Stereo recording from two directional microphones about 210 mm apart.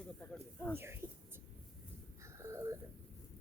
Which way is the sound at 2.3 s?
15° right (ahead or behind).